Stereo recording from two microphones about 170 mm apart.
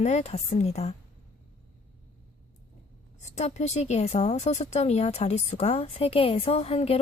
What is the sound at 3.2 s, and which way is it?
A woman's voice, 40° left (ahead or behind).